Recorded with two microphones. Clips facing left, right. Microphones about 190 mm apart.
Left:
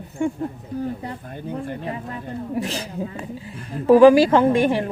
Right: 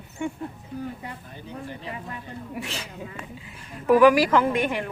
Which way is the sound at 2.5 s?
35° left (ahead or behind).